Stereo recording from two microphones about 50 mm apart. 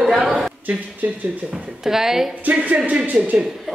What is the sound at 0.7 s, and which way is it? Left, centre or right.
Speech, right.